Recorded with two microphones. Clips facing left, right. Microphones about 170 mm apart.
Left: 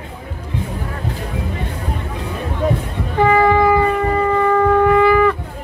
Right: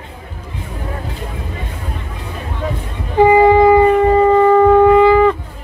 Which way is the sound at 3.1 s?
20° right (ahead or behind).